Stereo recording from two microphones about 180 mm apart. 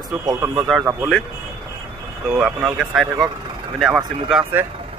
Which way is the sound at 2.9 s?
Centre (ahead or behind).